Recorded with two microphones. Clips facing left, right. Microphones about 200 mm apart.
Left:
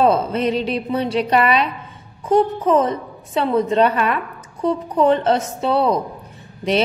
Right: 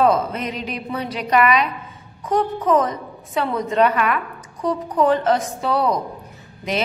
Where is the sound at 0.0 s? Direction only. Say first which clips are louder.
Left 2 dB; 30° left (ahead or behind).